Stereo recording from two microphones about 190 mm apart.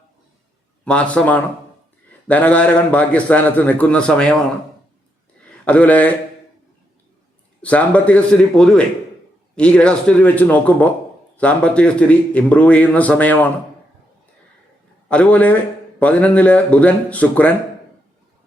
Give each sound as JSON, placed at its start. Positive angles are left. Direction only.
{"t": 0.9, "sound": "a man's voice", "side_deg": 5}
{"t": 5.6, "sound": "a man's voice", "side_deg": 5}
{"t": 7.6, "sound": "a man's voice", "side_deg": 5}
{"t": 15.1, "sound": "a man's voice", "side_deg": 5}